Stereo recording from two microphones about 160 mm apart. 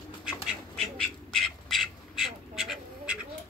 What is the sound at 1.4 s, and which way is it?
Duck, centre (ahead or behind).